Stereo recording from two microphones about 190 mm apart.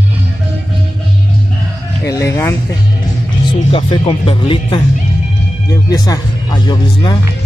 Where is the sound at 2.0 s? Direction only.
15° left (ahead or behind).